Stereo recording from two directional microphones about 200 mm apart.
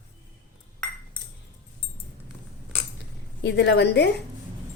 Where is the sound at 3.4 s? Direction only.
55° left (ahead or behind).